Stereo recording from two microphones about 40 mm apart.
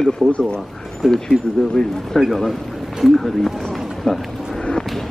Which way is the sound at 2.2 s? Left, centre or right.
Centre.